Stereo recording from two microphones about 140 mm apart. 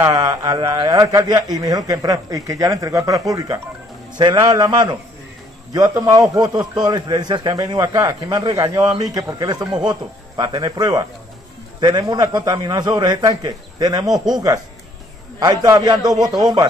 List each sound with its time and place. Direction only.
0.0 s a man's voice: 25° right (ahead or behind)